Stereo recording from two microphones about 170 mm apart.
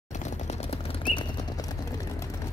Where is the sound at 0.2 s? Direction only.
40° left (ahead or behind).